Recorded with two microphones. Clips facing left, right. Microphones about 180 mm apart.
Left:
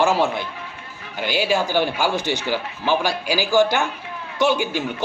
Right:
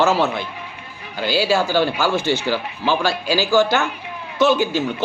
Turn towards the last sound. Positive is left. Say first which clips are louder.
# right 3 dB
turn(degrees=15)  # may be behind; listen again after turning